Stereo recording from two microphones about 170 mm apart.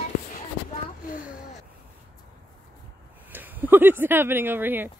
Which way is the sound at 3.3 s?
10° right (ahead or behind).